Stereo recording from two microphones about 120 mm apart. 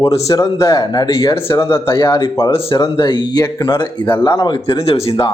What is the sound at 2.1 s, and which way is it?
Speech, 40° left (ahead or behind).